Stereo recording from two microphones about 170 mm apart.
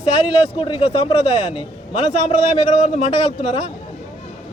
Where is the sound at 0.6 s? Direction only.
30° left (ahead or behind).